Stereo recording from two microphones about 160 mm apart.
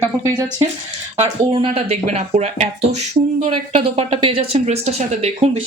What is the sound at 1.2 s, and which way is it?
Speech, 35° right (ahead or behind).